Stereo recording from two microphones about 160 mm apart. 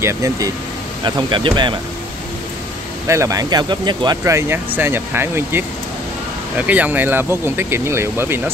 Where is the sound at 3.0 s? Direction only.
20° right (ahead or behind).